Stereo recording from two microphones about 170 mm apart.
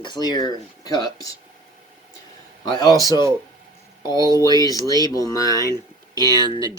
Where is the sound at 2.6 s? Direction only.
25° left (ahead or behind).